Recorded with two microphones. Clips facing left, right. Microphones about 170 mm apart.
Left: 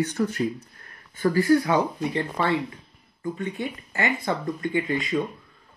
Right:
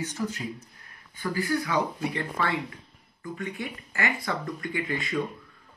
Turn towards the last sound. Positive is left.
turn(degrees=20)  # may be behind; listen again after turning